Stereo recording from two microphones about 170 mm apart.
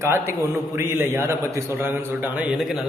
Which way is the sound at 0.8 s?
15° right (ahead or behind).